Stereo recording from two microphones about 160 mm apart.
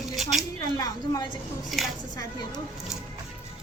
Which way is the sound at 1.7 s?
Centre (ahead or behind).